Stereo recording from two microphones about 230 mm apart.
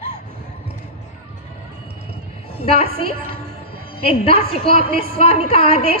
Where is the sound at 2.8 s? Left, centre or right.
Right.